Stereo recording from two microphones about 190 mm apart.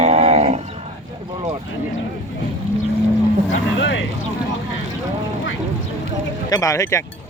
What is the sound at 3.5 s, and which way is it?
Vehicle, 75° left (ahead or behind).